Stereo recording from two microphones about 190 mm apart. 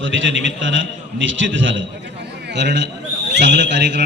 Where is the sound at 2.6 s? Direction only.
65° right (ahead or behind).